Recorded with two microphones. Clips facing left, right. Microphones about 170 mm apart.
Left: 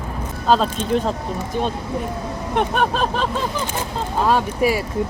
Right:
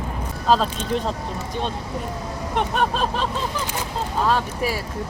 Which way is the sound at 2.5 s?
Centre (ahead or behind).